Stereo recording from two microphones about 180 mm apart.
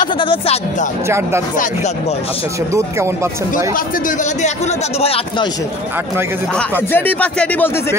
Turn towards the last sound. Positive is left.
turn(degrees=10)  # may be behind; listen again after turning